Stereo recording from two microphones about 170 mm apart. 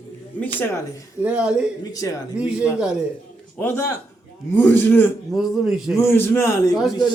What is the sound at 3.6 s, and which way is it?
A man's voice, 15° left (ahead or behind).